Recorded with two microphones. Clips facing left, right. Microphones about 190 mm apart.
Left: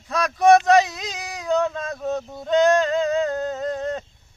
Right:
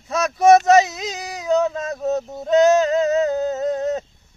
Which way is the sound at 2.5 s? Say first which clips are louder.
Right 3 dB; 5° right (ahead or behind).